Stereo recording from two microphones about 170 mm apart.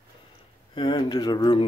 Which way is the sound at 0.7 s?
25° left (ahead or behind).